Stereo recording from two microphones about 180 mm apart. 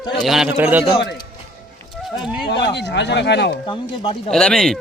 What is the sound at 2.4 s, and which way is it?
Speech, 70° left (ahead or behind).